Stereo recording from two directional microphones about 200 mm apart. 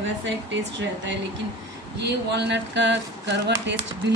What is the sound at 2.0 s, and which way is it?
A woman's voice, 60° right (ahead or behind).